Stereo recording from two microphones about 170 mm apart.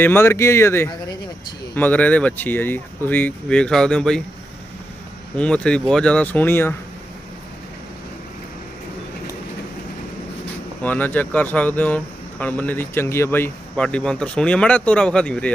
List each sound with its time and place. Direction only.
0.0 s speech: 15° left (ahead or behind)
5.4 s speech: 5° left (ahead or behind)
10.8 s speech: 10° left (ahead or behind)